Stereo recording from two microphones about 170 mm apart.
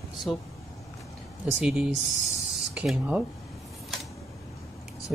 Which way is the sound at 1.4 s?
5° right (ahead or behind).